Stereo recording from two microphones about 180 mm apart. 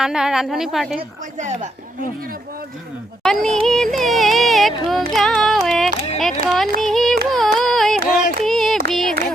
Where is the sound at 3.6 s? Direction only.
Centre (ahead or behind).